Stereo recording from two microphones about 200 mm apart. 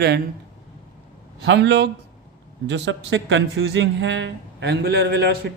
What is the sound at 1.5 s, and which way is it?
A man's voice, 60° right (ahead or behind).